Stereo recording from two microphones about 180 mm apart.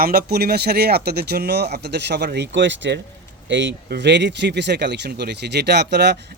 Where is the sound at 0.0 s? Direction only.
55° right (ahead or behind).